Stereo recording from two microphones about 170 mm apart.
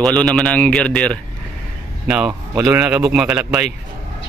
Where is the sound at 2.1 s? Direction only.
5° right (ahead or behind).